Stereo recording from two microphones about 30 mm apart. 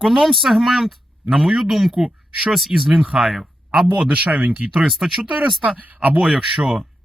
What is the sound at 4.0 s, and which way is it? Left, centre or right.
Speech, right.